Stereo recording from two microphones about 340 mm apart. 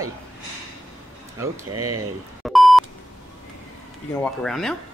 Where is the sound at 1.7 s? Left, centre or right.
Right.